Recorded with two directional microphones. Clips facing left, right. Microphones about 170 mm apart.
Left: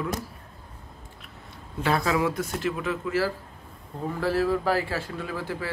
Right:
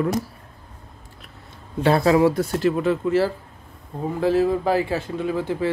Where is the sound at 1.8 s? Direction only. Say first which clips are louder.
Right 8 dB; 30° right (ahead or behind).